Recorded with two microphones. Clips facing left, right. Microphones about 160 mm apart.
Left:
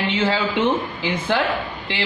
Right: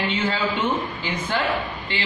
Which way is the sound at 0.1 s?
90° left.